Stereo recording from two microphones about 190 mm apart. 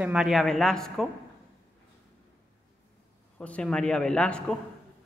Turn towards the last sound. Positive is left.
turn(degrees=5)  # may be behind; listen again after turning